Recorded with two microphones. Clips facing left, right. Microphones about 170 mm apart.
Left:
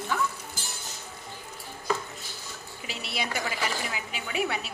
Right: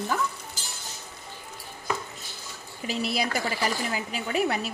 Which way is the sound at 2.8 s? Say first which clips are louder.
Right 7 dB; 40° right (ahead or behind).